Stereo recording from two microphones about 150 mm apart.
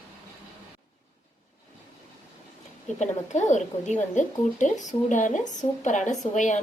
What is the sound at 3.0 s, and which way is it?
A woman's voice, 55° left (ahead or behind).